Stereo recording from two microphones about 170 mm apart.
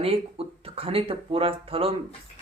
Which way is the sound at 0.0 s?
35° right (ahead or behind).